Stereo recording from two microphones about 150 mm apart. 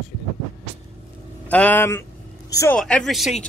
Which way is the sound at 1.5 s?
10° left (ahead or behind).